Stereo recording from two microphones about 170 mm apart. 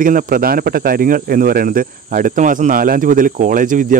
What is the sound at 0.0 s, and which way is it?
Speech, 55° right (ahead or behind).